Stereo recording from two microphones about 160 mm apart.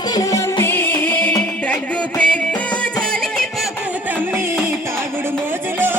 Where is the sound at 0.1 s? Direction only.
20° left (ahead or behind).